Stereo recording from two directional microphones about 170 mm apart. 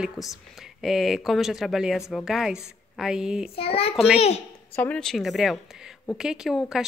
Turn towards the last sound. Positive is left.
turn(degrees=0)  # may be behind; listen again after turning